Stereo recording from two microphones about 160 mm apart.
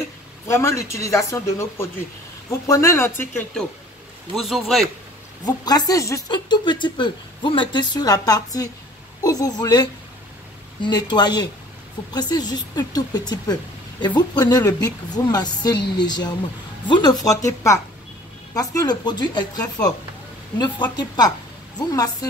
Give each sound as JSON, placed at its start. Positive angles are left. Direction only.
{"t": 0.5, "sound": "speech", "side_deg": 15}
{"t": 4.4, "sound": "a man's voice", "side_deg": 0}
{"t": 5.4, "sound": "speech", "side_deg": 25}